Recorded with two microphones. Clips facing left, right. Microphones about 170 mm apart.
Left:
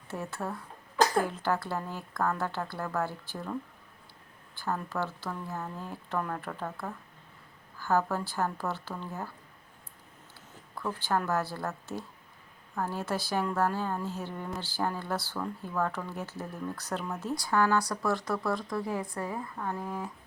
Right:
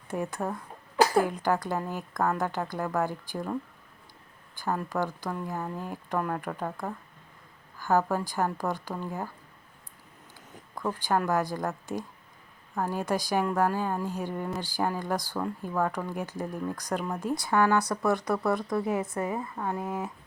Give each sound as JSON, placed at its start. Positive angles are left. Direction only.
{"t": 0.1, "sound": "a woman's voice", "side_deg": -15}
{"t": 4.5, "sound": "a woman's voice", "side_deg": -15}
{"t": 10.5, "sound": "a woman's voice", "side_deg": -15}